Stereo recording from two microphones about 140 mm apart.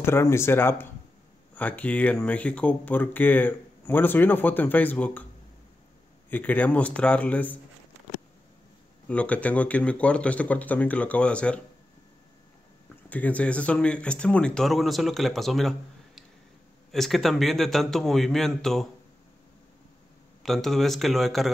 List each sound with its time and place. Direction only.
0.0 s speech: 20° left (ahead or behind)
6.3 s speech: 10° left (ahead or behind)
9.0 s speech: 10° left (ahead or behind)
13.1 s speech: 10° left (ahead or behind)
16.9 s speech: centre (ahead or behind)
20.4 s speech: centre (ahead or behind)